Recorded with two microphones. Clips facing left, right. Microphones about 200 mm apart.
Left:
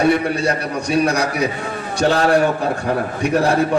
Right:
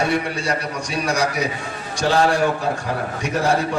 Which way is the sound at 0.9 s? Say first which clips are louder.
Left 7 dB; 60° left (ahead or behind).